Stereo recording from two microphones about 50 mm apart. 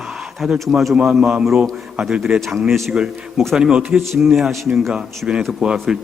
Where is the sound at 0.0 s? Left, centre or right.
Centre.